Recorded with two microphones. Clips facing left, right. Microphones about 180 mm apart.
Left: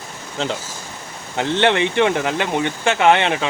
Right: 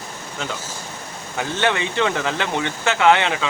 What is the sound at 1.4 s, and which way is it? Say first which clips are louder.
Speech: left 5 dB; 25° left (ahead or behind).